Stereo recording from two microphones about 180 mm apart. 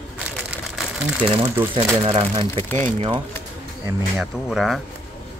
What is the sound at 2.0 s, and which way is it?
Speech, 25° right (ahead or behind).